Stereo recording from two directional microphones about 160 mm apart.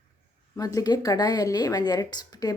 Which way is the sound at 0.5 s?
20° left (ahead or behind).